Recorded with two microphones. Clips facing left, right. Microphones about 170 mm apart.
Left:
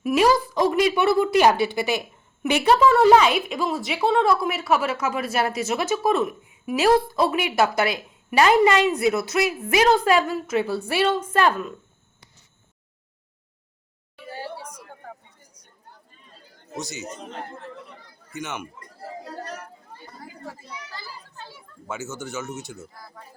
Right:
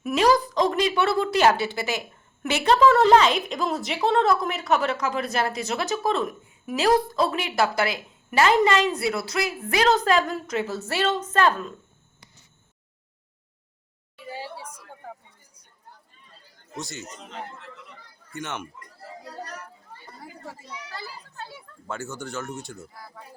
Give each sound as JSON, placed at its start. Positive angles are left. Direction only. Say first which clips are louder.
{"t": 0.0, "sound": "a woman's voice", "louder": "left 1 dB", "side_deg": 5}
{"t": 14.3, "sound": "a sound", "louder": "left 1 dB", "side_deg": -5}
{"t": 16.7, "sound": "speech", "louder": "left 3 dB", "side_deg": 0}
{"t": 17.2, "sound": "a man's voice", "louder": "left 3 dB", "side_deg": 45}
{"t": 18.3, "sound": "speech", "louder": "left 1 dB", "side_deg": 0}
{"t": 20.2, "sound": "a child's voice", "louder": "left 1 dB", "side_deg": 0}
{"t": 21.8, "sound": "speech", "louder": "left 1 dB", "side_deg": 5}